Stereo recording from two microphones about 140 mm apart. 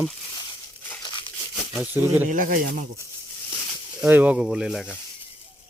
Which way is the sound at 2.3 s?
80° right.